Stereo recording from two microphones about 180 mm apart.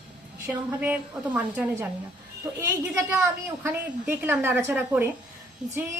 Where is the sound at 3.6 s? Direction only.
10° right (ahead or behind).